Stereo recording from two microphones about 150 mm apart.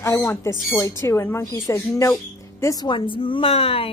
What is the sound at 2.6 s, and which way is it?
A woman's voice, 25° left (ahead or behind).